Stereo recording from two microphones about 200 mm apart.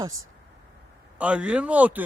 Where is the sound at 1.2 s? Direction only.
5° right (ahead or behind).